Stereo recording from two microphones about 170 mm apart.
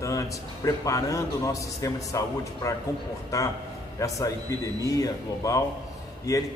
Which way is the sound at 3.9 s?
20° left (ahead or behind).